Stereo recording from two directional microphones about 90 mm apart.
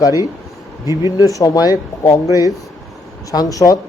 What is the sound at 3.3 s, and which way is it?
Speech, 40° left (ahead or behind).